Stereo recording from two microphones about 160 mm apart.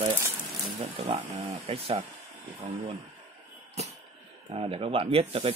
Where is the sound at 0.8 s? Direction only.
40° right (ahead or behind).